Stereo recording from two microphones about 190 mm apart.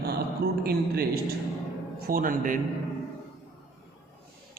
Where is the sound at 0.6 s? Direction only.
55° right (ahead or behind).